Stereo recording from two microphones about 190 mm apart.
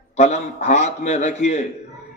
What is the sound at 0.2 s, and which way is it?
A man's voice, 35° left (ahead or behind).